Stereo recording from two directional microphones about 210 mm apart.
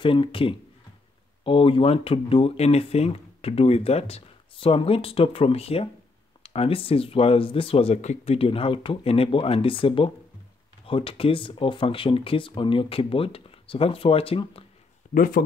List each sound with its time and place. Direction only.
0.0 s speech: 25° left (ahead or behind)
15.1 s speech: 40° left (ahead or behind)